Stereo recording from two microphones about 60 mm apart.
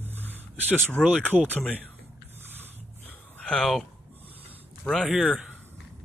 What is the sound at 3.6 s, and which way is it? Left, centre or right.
Speech, centre.